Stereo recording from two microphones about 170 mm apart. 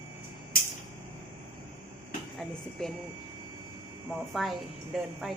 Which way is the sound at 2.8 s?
Centre (ahead or behind).